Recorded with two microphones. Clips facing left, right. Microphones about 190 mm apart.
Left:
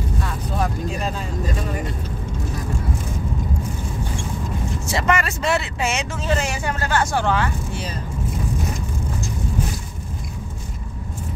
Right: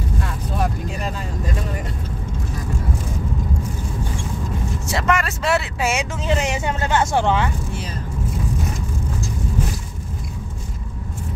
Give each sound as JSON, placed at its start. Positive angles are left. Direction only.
{"t": 4.8, "sound": "speech", "side_deg": 0}